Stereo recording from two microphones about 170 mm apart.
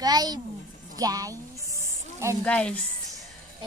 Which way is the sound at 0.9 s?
20° right (ahead or behind).